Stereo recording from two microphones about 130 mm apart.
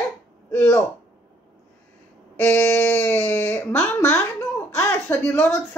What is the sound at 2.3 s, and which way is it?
A woman's voice, 15° left (ahead or behind).